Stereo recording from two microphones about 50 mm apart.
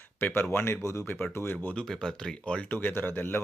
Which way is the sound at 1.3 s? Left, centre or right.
Left.